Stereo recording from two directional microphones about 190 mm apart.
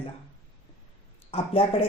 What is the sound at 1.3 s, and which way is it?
Speech, 30° left (ahead or behind).